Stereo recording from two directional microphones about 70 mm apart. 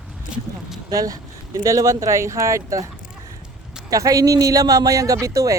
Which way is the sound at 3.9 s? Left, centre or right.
Right.